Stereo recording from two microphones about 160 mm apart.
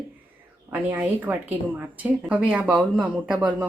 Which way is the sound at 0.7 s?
10° right (ahead or behind).